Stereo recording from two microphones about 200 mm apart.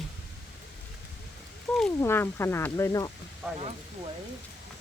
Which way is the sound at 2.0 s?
10° left (ahead or behind).